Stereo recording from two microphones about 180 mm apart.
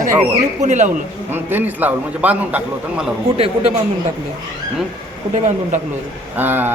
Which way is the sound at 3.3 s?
35° right (ahead or behind).